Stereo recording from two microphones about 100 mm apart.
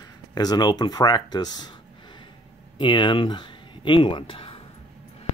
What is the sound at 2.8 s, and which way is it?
Speech, 50° left (ahead or behind).